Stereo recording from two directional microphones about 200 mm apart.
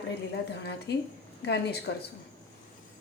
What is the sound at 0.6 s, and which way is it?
Speech, 55° left (ahead or behind).